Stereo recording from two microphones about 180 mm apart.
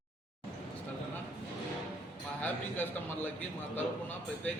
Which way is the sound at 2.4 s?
10° left (ahead or behind).